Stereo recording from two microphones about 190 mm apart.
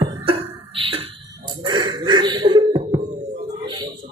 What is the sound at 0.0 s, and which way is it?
Beatboxing, 30° right (ahead or behind).